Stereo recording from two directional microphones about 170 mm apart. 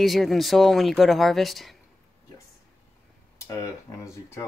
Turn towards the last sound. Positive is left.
turn(degrees=15)  # may be behind; listen again after turning